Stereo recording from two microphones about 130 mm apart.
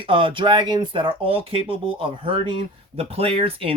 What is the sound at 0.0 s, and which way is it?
Speech, 40° right (ahead or behind).